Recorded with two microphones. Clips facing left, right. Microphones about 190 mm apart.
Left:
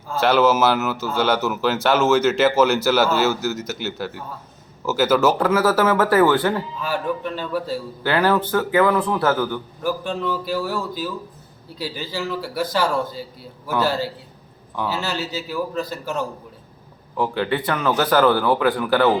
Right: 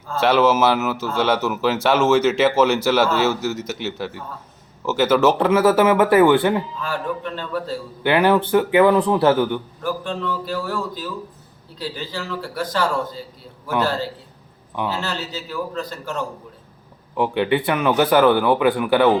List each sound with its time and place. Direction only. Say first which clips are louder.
0.1 s speech: even; centre (ahead or behind)
5.5 s speech: right 3 dB; 20° right (ahead or behind)
6.7 s a man's voice: left 1 dB; 5° left (ahead or behind)
8.0 s a man's voice: right 3 dB; 15° right (ahead or behind)
9.8 s a man's voice: left 4 dB; 10° left (ahead or behind)
17.2 s a man's voice: right 3 dB; 20° right (ahead or behind)
18.3 s a man's voice: right 2 dB; 20° right (ahead or behind)